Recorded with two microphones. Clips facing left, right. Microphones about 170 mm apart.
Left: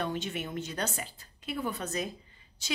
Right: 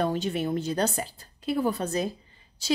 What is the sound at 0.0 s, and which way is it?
Speech, 35° right (ahead or behind).